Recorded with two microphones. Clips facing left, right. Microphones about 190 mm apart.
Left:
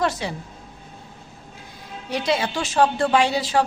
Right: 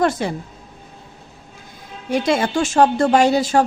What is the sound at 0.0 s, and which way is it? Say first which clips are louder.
Speech: right 5 dB; 50° right (ahead or behind).